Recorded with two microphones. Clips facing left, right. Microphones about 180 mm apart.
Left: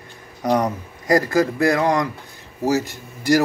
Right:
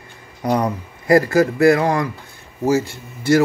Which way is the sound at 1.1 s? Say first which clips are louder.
Right 3 dB; 15° left (ahead or behind).